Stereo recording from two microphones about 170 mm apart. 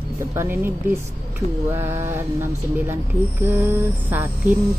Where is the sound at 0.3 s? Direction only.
15° right (ahead or behind).